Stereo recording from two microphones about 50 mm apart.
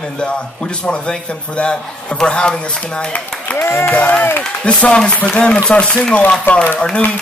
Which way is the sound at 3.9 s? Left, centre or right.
Left.